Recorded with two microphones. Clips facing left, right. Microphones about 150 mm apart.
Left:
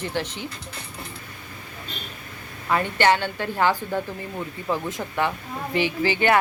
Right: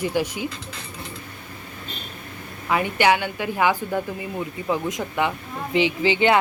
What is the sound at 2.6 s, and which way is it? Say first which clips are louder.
A woman's voice: right 1 dB; 15° right (ahead or behind).